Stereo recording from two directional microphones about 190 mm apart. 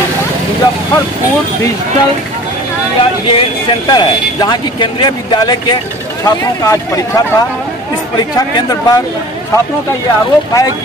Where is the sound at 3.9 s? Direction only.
20° left (ahead or behind).